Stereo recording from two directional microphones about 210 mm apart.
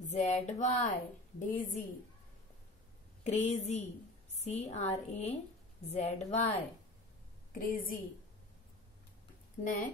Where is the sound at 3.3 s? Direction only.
30° left (ahead or behind).